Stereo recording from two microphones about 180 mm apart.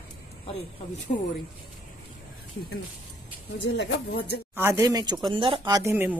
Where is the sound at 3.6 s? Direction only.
70° left (ahead or behind).